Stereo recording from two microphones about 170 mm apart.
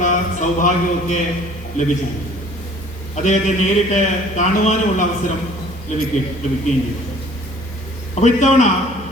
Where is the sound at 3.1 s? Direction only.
45° left (ahead or behind).